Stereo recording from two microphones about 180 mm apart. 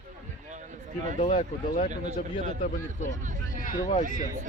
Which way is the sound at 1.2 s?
50° left (ahead or behind).